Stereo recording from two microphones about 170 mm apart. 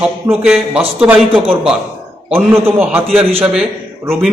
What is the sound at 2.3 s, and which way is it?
Speech, 15° right (ahead or behind).